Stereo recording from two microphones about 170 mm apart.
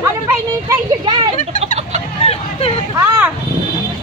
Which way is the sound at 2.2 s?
40° left (ahead or behind).